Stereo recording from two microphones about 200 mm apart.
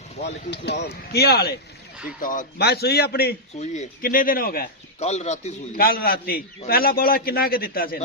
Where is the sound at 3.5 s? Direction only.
35° left (ahead or behind).